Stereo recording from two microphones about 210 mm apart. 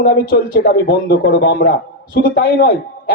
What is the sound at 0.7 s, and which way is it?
Speech, 45° left (ahead or behind).